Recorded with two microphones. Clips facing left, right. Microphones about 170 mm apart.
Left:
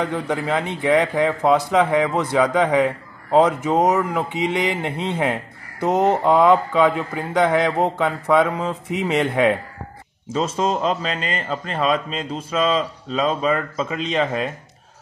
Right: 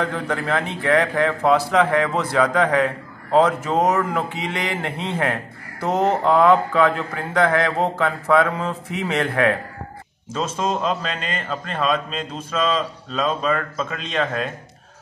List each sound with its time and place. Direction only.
0.0 s speech: 15° left (ahead or behind)
10.3 s a man's voice: centre (ahead or behind)